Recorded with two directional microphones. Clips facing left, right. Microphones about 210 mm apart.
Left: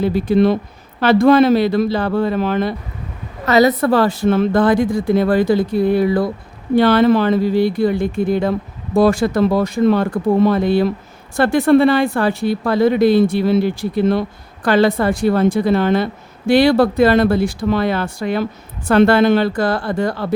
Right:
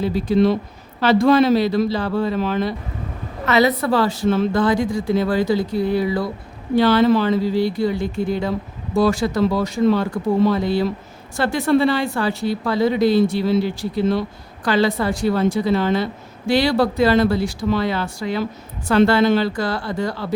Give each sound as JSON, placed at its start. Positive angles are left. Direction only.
{"t": 0.0, "sound": "speech", "side_deg": 55}
{"t": 3.4, "sound": "speech", "side_deg": 40}